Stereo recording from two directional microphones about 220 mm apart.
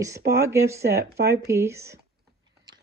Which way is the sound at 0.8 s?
45° right (ahead or behind).